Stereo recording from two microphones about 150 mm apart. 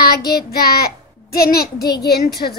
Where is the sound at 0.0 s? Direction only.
90° left.